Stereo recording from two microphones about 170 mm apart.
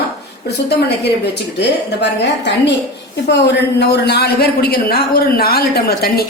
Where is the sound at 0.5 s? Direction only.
75° left (ahead or behind).